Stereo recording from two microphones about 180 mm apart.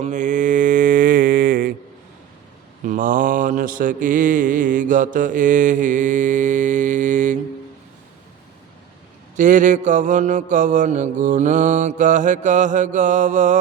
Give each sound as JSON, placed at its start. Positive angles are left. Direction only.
{"t": 0.0, "sound": "mantra", "side_deg": -45}
{"t": 2.8, "sound": "mantra", "side_deg": -50}
{"t": 9.3, "sound": "mantra", "side_deg": -45}